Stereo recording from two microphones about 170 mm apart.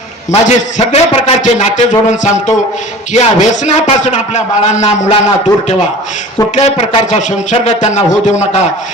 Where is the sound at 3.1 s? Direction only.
40° left (ahead or behind).